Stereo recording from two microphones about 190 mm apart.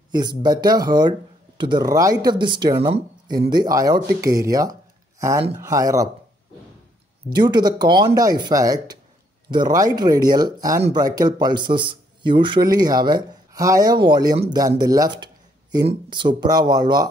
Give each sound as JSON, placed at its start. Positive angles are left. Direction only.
{"t": 0.1, "sound": "speech", "side_deg": -20}
{"t": 7.3, "sound": "speech", "side_deg": -20}